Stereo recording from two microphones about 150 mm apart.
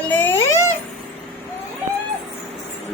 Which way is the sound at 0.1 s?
10° left (ahead or behind).